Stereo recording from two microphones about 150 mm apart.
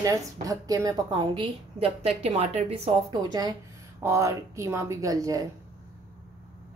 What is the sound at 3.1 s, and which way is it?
A woman's voice, 25° right (ahead or behind).